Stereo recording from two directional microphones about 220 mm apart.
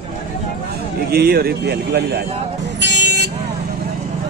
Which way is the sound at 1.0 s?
45° right (ahead or behind).